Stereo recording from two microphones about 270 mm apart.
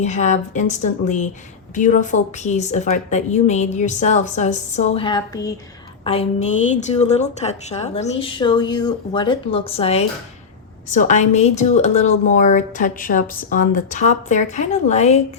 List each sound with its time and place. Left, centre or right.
0.0 s a woman's voice: left